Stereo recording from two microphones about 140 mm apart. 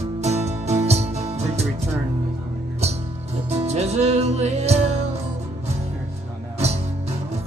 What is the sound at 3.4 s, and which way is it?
Music, 50° right (ahead or behind).